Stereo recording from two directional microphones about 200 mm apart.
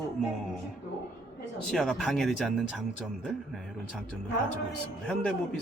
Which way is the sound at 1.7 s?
Centre (ahead or behind).